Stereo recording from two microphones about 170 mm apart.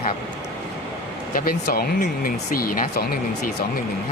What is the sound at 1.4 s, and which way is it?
Speech, 60° left (ahead or behind).